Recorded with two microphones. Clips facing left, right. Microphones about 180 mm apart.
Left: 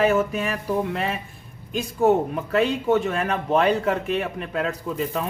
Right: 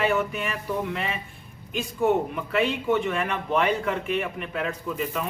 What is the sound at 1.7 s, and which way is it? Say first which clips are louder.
A man's voice: left 4 dB; 40° left (ahead or behind).